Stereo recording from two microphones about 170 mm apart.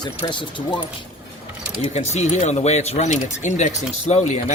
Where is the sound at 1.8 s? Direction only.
40° left (ahead or behind).